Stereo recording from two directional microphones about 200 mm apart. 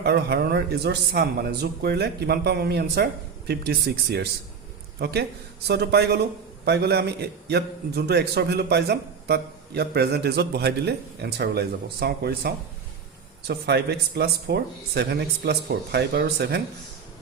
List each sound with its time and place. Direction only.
0.0 s a man's voice: 55° right (ahead or behind)